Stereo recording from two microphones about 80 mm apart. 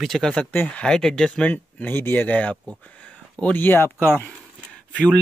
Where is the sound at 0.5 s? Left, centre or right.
Left.